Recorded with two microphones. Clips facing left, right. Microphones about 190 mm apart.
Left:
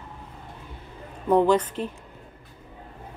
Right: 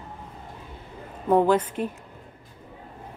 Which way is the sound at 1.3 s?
5° right (ahead or behind).